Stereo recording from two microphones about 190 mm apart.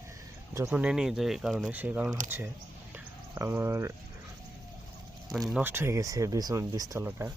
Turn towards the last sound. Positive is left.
turn(degrees=-15)  # may be behind; listen again after turning